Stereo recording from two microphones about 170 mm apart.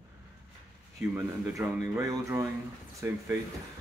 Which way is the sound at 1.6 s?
15° right (ahead or behind).